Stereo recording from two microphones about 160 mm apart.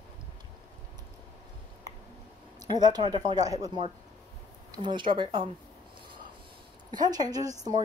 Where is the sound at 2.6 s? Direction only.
25° right (ahead or behind).